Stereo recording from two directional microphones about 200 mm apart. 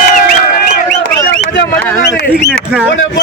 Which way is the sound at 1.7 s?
10° left (ahead or behind).